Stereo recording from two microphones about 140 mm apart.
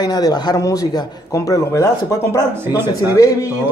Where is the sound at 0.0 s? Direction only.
30° left (ahead or behind).